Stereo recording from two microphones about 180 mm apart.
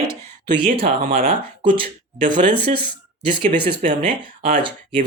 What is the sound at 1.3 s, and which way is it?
Speech, 30° right (ahead or behind).